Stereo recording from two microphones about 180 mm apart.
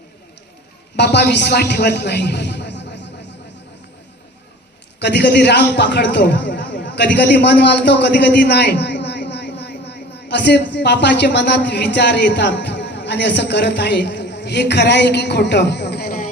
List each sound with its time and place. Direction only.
0.9 s a man's voice: 70° left (ahead or behind)
4.9 s a man's voice: 70° left (ahead or behind)